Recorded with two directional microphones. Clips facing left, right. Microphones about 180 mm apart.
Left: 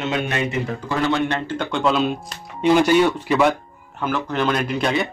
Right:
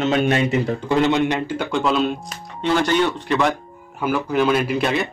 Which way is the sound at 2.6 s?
10° left (ahead or behind).